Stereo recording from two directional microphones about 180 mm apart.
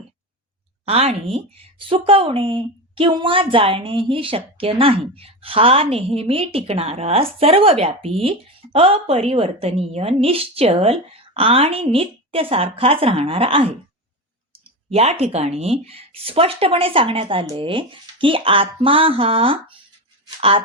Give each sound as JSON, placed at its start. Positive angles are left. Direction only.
{"t": 0.9, "sound": "speech", "side_deg": -35}